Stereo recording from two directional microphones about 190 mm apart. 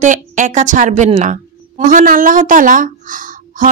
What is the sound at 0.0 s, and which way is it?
A woman's voice, 40° right (ahead or behind).